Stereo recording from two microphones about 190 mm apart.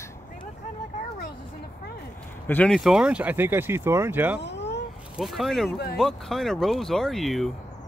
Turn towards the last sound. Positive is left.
turn(degrees=0)  # may be behind; listen again after turning